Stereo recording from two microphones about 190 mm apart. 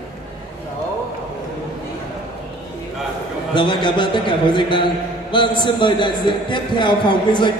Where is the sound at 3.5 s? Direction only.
25° left (ahead or behind).